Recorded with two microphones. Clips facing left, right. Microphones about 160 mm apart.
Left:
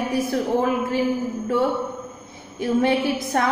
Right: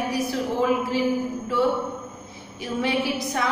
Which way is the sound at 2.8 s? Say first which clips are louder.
Left 3 dB; 50° left (ahead or behind).